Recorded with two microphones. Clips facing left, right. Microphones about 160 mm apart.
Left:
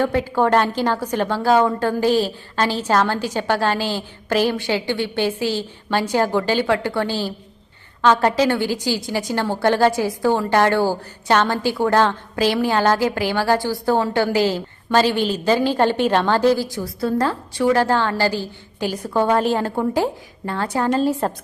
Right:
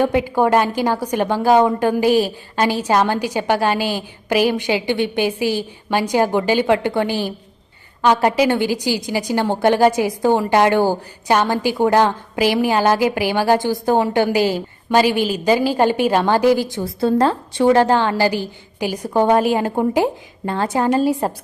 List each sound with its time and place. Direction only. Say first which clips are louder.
0.0 s a woman's voice: right 2 dB; 15° right (ahead or behind)
16.6 s a woman's voice: right 4 dB; 25° right (ahead or behind)